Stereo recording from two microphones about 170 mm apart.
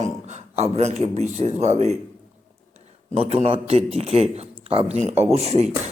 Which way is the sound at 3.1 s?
40° right (ahead or behind).